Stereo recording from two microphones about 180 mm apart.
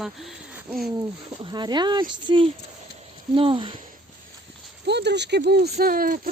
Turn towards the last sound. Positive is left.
turn(degrees=-55)  # may be behind; listen again after turning